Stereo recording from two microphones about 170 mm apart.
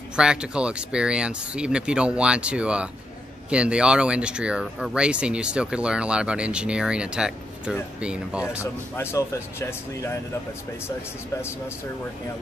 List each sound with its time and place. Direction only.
0.1 s speech: 5° right (ahead or behind)
8.9 s speech: 15° left (ahead or behind)